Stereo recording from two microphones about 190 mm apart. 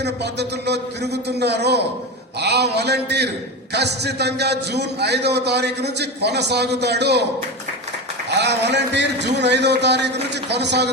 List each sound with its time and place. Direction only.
0.0 s a man's voice: 60° right (ahead or behind)
8.3 s a man's voice: 60° right (ahead or behind)